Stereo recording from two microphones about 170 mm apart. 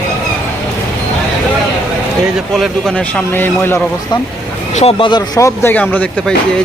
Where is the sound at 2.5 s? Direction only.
5° left (ahead or behind).